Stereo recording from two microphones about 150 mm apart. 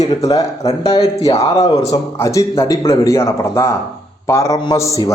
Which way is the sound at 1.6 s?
25° left (ahead or behind).